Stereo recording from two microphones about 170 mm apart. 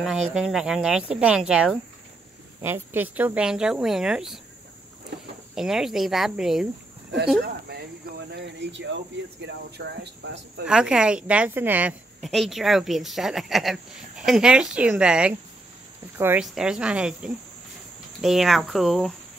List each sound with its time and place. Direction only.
0.3 s a woman's voice: 5° right (ahead or behind)
5.5 s a woman's voice: centre (ahead or behind)
8.3 s speech: 85° right
10.7 s a woman's voice: 5° right (ahead or behind)